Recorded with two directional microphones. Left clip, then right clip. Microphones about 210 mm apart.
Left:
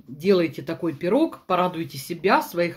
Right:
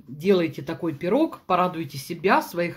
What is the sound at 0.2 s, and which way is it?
Speech, centre (ahead or behind).